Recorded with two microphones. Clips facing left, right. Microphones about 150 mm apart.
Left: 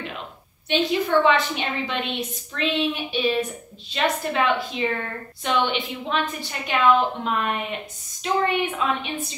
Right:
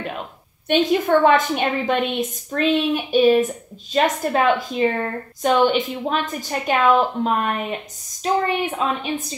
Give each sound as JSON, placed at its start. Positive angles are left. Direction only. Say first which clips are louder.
{"t": 0.7, "sound": "a woman's voice", "louder": "right 5 dB", "side_deg": -50}